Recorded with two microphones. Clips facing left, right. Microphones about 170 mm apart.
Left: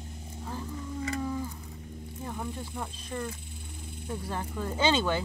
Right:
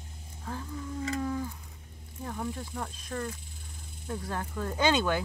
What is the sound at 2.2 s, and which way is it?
Speech, 5° left (ahead or behind).